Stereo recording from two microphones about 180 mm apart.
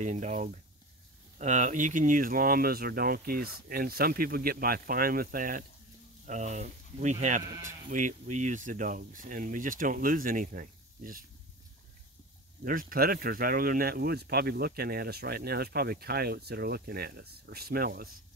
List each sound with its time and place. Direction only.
0.0 s speech: 40° right (ahead or behind)
12.6 s speech: 50° right (ahead or behind)